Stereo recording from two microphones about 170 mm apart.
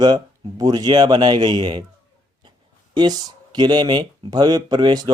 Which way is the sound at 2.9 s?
25° right (ahead or behind).